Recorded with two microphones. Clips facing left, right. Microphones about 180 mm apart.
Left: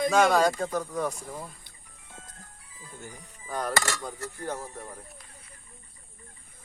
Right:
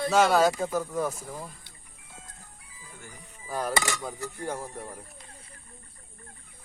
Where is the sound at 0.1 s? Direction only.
5° right (ahead or behind).